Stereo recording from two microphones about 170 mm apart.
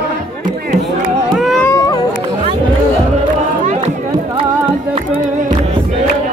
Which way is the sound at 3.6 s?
40° right (ahead or behind).